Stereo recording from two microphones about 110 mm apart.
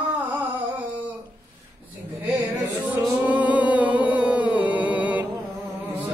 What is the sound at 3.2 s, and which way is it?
Music, 15° right (ahead or behind).